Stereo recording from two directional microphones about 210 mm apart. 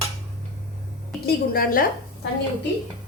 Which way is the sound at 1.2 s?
45° left (ahead or behind).